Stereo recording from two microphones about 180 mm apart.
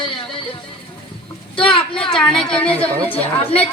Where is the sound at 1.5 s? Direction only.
30° left (ahead or behind).